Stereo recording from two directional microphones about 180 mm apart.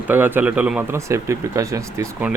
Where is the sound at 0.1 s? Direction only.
10° right (ahead or behind).